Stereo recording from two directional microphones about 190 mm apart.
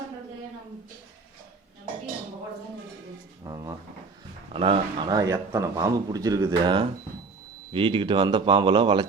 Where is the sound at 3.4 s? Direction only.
20° right (ahead or behind).